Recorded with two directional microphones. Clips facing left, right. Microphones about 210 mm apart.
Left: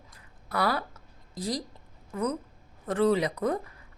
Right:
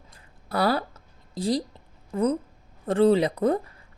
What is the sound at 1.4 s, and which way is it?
Speech, 30° right (ahead or behind).